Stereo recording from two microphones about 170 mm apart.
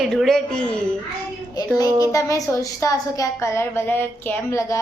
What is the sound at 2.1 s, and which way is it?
A woman's voice, 20° left (ahead or behind).